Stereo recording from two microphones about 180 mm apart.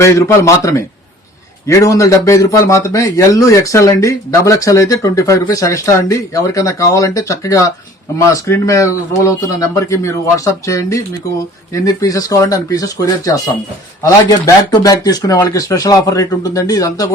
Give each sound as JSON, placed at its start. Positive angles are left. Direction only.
{"t": 0.0, "sound": "speech", "side_deg": 15}